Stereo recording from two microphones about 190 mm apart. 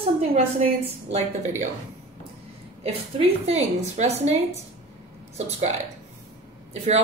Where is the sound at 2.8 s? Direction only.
30° right (ahead or behind).